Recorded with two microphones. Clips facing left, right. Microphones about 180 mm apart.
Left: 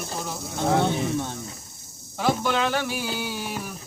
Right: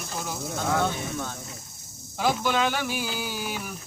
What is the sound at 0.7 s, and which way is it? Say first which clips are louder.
Speech: left 5 dB; 25° left (ahead or behind).